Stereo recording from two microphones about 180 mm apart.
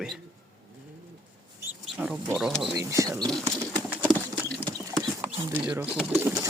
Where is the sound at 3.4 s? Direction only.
10° right (ahead or behind).